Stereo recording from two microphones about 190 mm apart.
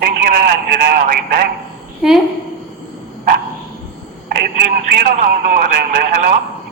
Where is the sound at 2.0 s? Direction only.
Centre (ahead or behind).